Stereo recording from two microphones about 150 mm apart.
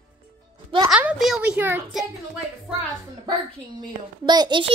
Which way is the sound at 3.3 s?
30° right (ahead or behind).